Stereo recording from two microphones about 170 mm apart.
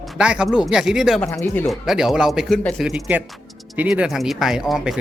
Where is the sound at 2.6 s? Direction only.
10° left (ahead or behind).